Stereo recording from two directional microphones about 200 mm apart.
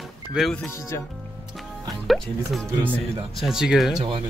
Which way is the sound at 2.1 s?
Centre (ahead or behind).